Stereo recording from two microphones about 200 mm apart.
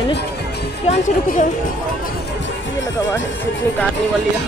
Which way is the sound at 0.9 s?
40° left (ahead or behind).